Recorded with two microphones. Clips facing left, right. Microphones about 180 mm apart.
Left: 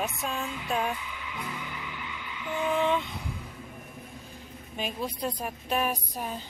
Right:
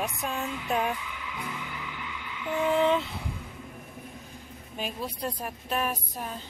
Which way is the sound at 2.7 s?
30° right (ahead or behind).